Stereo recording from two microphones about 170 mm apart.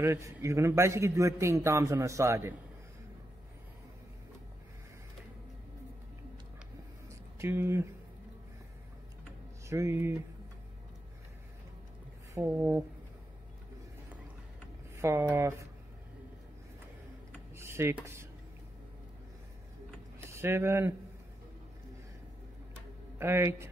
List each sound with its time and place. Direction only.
0.0 s a man's voice: 15° right (ahead or behind)
7.1 s a sound: 15° right (ahead or behind)
9.7 s a man's voice: 15° right (ahead or behind)
12.4 s a man's voice: 10° right (ahead or behind)
15.0 s a man's voice: 15° right (ahead or behind)
17.6 s a sound: 15° right (ahead or behind)
20.2 s speech: 15° right (ahead or behind)
23.1 s a man's voice: 15° right (ahead or behind)